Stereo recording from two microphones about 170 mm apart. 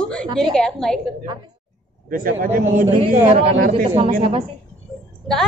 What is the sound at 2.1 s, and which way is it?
Speech, 60° right (ahead or behind).